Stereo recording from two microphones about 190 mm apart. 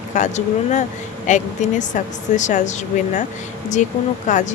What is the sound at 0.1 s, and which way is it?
Speech, 40° left (ahead or behind).